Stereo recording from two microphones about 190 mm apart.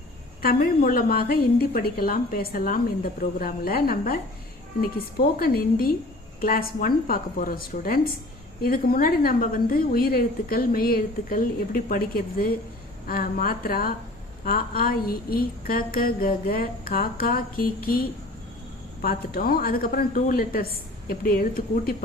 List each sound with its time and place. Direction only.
0.4 s a woman's voice: 50° left (ahead or behind)
19.0 s a woman's voice: 50° left (ahead or behind)